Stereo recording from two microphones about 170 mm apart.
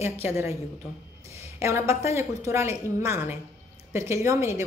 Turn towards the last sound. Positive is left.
turn(degrees=-15)  # may be behind; listen again after turning